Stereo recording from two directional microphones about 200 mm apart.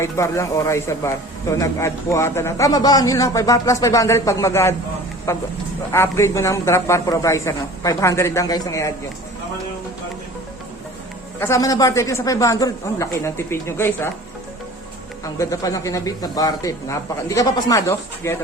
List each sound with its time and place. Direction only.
0.0 s speech: 15° left (ahead or behind)
11.3 s speech: 15° left (ahead or behind)
15.2 s speech: 15° left (ahead or behind)